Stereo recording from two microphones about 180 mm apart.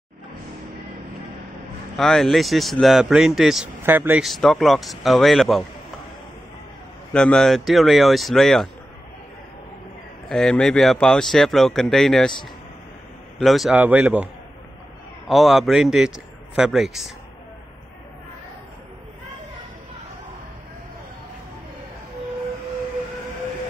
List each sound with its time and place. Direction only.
2.0 s speech: centre (ahead or behind)
7.1 s speech: 5° left (ahead or behind)
10.2 s speech: 5° left (ahead or behind)
13.4 s a man's voice: centre (ahead or behind)